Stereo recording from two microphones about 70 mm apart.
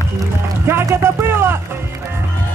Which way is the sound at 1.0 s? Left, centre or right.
Right.